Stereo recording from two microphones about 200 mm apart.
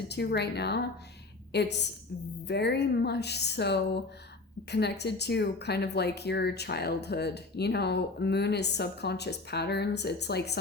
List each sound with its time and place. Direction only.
0.1 s speech: 55° left (ahead or behind)